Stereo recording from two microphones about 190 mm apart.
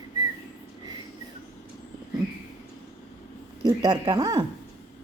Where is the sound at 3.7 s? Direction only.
20° right (ahead or behind).